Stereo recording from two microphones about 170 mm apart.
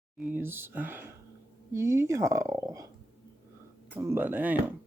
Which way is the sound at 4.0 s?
15° right (ahead or behind).